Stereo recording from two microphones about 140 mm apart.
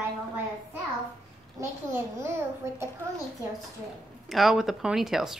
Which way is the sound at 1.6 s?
20° right (ahead or behind).